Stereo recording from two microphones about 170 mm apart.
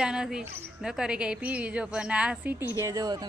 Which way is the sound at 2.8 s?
20° right (ahead or behind).